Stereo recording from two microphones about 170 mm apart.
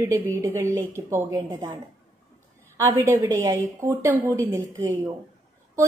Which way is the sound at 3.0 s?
20° right (ahead or behind).